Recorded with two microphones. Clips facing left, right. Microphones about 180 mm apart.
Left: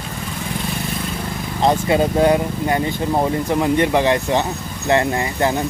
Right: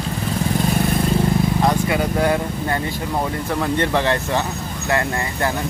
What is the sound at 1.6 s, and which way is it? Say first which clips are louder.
Speech: left 2 dB; 25° left (ahead or behind).